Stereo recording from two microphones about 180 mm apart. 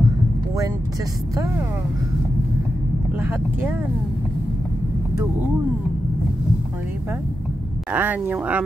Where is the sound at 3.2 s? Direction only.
10° right (ahead or behind).